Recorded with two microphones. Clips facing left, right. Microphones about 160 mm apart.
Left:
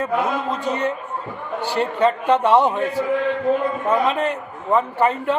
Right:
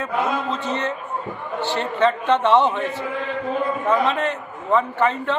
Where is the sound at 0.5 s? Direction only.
10° left (ahead or behind).